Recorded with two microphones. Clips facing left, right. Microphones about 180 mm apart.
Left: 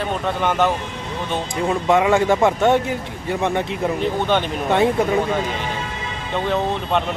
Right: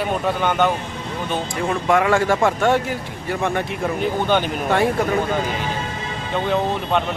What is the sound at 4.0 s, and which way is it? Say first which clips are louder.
Speech: right 2 dB; centre (ahead or behind).